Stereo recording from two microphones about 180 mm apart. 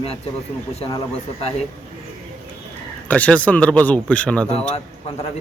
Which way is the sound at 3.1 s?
5° left (ahead or behind).